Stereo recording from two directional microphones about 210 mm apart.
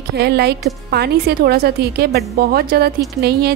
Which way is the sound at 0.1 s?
50° right (ahead or behind).